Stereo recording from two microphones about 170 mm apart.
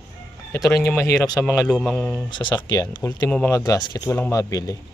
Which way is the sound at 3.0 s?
15° left (ahead or behind).